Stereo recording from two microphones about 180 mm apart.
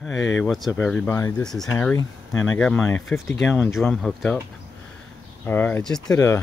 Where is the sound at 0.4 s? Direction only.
Centre (ahead or behind).